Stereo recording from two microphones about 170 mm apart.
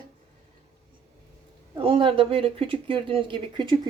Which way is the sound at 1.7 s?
30° right (ahead or behind).